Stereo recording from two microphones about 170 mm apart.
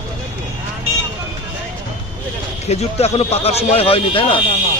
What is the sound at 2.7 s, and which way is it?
A man's voice, 40° left (ahead or behind).